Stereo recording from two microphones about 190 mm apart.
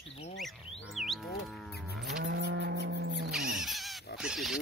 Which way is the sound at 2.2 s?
65° right (ahead or behind).